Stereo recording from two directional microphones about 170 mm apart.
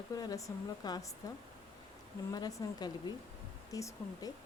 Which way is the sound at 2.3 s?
20° left (ahead or behind).